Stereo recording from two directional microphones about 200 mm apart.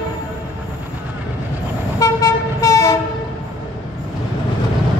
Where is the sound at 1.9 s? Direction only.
15° left (ahead or behind).